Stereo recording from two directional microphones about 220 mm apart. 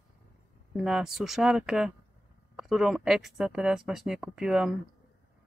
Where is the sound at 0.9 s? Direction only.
Centre (ahead or behind).